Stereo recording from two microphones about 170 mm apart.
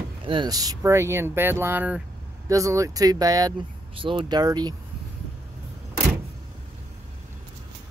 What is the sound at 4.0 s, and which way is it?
Speech, 30° right (ahead or behind).